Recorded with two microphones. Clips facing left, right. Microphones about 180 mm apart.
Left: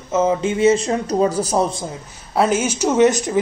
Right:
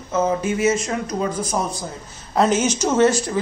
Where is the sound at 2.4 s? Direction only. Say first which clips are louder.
Even; 10° left (ahead or behind).